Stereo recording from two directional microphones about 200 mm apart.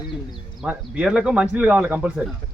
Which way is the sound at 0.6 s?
5° right (ahead or behind).